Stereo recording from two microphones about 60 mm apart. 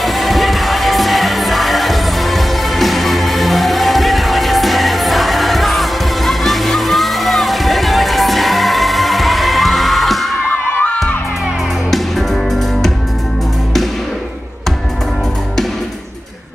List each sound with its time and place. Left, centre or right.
0.0 s music: centre
10.5 s crowd: left